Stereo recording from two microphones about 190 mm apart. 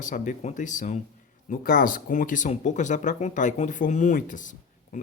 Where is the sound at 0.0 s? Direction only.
40° left (ahead or behind).